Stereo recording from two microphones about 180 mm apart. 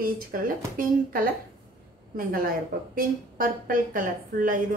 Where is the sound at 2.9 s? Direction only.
50° right (ahead or behind).